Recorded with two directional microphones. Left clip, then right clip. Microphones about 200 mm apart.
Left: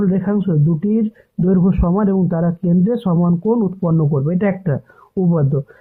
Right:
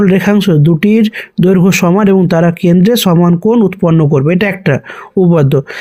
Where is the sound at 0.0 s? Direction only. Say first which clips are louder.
Right 9 dB; 25° right (ahead or behind).